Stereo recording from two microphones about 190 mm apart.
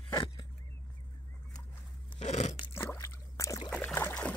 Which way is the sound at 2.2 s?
35° left (ahead or behind).